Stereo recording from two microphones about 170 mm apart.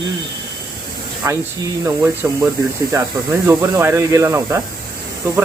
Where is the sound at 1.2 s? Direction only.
20° right (ahead or behind).